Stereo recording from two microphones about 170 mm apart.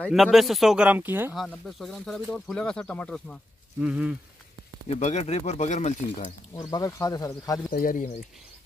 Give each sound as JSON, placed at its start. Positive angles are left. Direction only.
{"t": 0.0, "sound": "speech", "side_deg": 0}
{"t": 1.3, "sound": "speech", "side_deg": 0}
{"t": 3.8, "sound": "speech", "side_deg": -5}
{"t": 4.8, "sound": "speech", "side_deg": 40}
{"t": 6.5, "sound": "speech", "side_deg": 20}
{"t": 7.7, "sound": "speech", "side_deg": 55}